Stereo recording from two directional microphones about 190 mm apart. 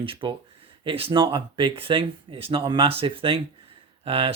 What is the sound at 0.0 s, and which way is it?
Speech, 25° right (ahead or behind).